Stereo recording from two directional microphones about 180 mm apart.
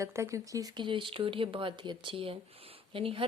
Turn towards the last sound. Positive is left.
turn(degrees=-30)  # may be behind; listen again after turning